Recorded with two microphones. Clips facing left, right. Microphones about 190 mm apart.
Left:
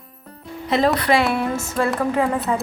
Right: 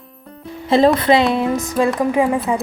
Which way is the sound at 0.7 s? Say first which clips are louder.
Right 5 dB; 25° right (ahead or behind).